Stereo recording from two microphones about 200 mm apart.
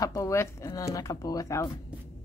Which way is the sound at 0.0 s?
15° left (ahead or behind).